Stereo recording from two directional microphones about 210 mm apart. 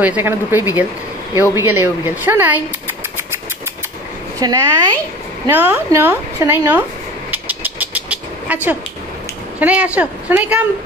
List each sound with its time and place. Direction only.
0.0 s a woman's voice: 10° right (ahead or behind)
4.4 s a woman's voice: 20° right (ahead or behind)
7.2 s vehicle: 10° right (ahead or behind)
9.6 s a woman's voice: 5° right (ahead or behind)